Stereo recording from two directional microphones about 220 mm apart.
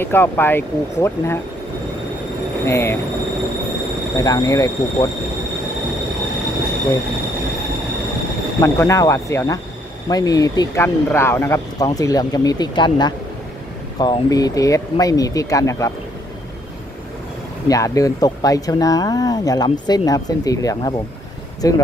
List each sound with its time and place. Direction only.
0.0 s speech: 10° left (ahead or behind)
2.6 s speech: 10° left (ahead or behind)
4.2 s speech: 15° left (ahead or behind)
8.5 s speech: 10° left (ahead or behind)
17.6 s speech: 15° left (ahead or behind)